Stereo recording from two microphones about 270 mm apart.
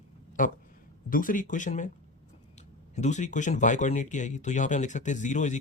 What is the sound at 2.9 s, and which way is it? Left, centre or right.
Speech, left.